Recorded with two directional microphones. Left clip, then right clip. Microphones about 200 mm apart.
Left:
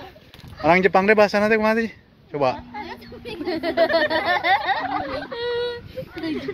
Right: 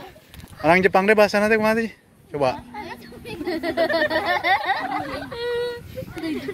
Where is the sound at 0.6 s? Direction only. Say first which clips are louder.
Even; 10° right (ahead or behind).